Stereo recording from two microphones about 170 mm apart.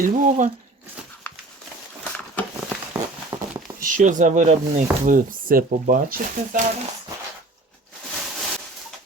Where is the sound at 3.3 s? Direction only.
25° right (ahead or behind).